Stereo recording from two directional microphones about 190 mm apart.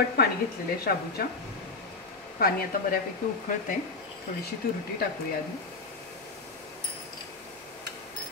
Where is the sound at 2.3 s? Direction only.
55° left (ahead or behind).